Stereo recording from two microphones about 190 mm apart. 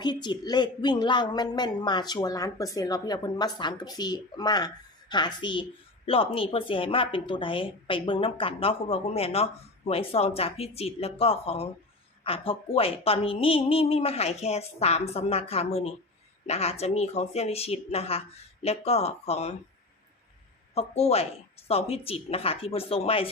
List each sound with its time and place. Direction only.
0.0 s a woman's voice: 20° left (ahead or behind)
20.7 s a woman's voice: 35° left (ahead or behind)